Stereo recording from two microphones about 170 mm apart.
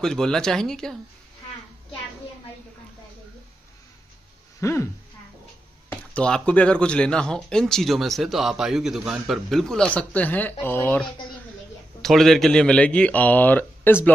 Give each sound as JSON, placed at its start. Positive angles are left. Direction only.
{"t": 0.0, "sound": "speech", "side_deg": 5}
{"t": 4.6, "sound": "speech", "side_deg": 15}
{"t": 5.9, "sound": "a man's voice", "side_deg": 5}